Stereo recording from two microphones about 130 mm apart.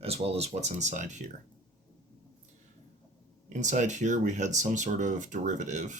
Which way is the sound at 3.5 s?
70° right (ahead or behind).